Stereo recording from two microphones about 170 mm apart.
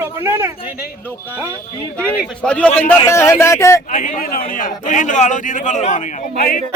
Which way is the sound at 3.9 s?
50° left (ahead or behind).